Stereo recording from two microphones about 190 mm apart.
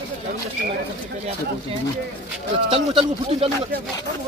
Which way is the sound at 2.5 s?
30° right (ahead or behind).